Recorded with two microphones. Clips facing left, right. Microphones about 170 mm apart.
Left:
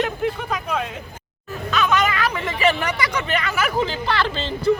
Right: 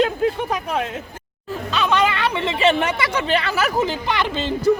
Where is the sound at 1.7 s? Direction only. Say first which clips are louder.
Right 1 dB; 30° right (ahead or behind).